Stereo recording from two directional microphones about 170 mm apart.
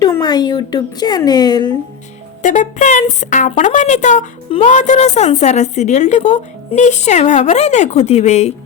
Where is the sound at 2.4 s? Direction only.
45° left (ahead or behind).